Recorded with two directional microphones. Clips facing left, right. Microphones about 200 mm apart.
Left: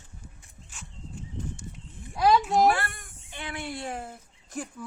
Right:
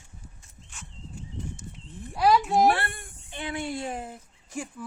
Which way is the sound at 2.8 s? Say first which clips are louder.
Right 2 dB; 25° right (ahead or behind).